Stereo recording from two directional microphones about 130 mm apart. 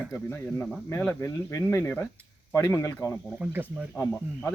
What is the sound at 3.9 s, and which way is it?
Speech, 20° left (ahead or behind).